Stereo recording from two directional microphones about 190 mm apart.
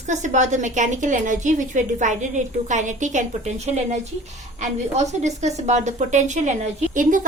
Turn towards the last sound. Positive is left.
turn(degrees=-40)  # may be behind; listen again after turning